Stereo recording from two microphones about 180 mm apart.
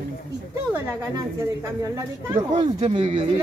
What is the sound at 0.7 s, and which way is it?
Speech, 20° right (ahead or behind).